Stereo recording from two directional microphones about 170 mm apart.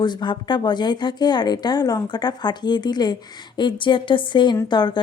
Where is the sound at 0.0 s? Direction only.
25° left (ahead or behind).